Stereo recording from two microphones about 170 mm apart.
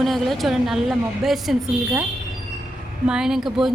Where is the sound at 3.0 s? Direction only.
5° right (ahead or behind).